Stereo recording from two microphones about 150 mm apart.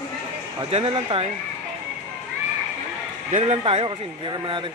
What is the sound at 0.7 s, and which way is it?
Speech, 40° right (ahead or behind).